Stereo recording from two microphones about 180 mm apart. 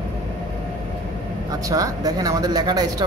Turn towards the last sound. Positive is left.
turn(degrees=-20)  # may be behind; listen again after turning